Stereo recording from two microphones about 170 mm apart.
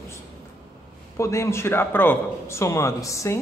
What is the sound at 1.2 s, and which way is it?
A man's voice, 15° left (ahead or behind).